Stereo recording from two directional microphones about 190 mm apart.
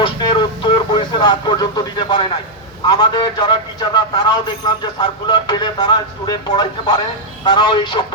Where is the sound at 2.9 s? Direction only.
25° left (ahead or behind).